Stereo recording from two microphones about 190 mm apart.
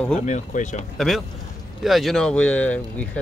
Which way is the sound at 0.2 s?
40° left (ahead or behind).